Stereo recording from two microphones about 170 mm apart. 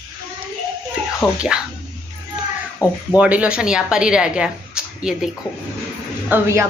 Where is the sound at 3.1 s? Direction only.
10° right (ahead or behind).